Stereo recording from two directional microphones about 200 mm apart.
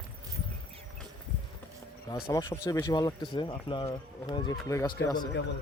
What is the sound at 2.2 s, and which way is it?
Speech, 15° left (ahead or behind).